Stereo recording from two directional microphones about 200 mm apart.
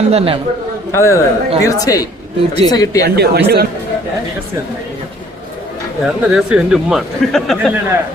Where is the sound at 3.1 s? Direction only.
55° right (ahead or behind).